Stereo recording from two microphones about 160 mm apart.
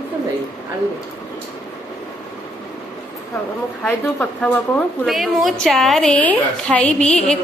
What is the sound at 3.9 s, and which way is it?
A woman's voice, 5° left (ahead or behind).